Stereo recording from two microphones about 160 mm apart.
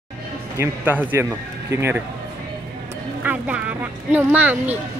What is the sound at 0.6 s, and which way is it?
Speech, 10° right (ahead or behind).